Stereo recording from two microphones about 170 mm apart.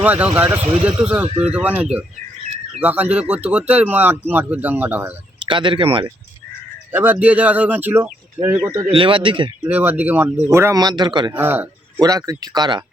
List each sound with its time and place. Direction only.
0.0 s speech: 10° right (ahead or behind)
5.5 s speech: 30° right (ahead or behind)
6.9 s speech: 10° right (ahead or behind)
8.9 s speech: 30° right (ahead or behind)
9.6 s speech: 10° right (ahead or behind); by 11.3 s 25° right (ahead or behind)
11.3 s speech: 10° right (ahead or behind)